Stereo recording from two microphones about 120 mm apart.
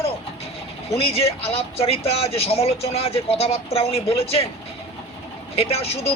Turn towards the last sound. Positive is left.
turn(degrees=55)  # may be behind; listen again after turning